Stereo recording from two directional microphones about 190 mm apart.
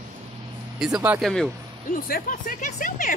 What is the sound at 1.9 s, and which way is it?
Speech, 50° left (ahead or behind).